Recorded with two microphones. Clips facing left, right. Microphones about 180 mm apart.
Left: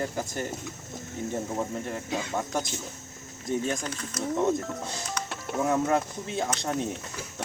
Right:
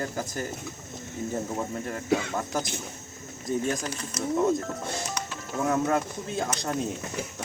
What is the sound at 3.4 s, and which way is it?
Speech, centre (ahead or behind).